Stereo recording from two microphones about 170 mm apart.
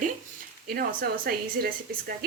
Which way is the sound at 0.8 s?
65° right (ahead or behind).